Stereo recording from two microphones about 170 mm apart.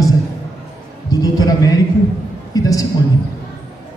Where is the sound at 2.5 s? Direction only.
20° left (ahead or behind).